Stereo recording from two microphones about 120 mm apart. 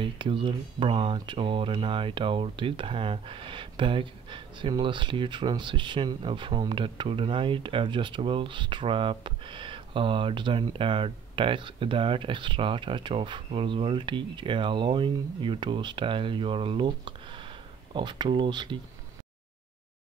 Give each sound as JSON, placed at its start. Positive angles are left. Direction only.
{"t": 0.0, "sound": "speech", "side_deg": -45}